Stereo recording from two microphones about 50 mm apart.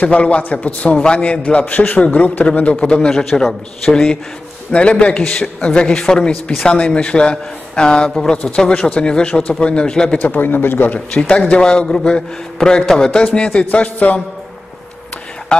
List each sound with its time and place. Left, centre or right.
0.0 s a man's voice: left
10.1 s a man's voice: left
11.1 s a man's voice: left
13.7 s a man's voice: left